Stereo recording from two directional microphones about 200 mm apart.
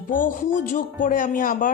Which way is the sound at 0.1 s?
40° left (ahead or behind).